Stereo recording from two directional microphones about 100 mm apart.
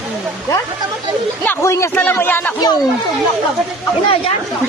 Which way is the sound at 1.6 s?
30° left (ahead or behind).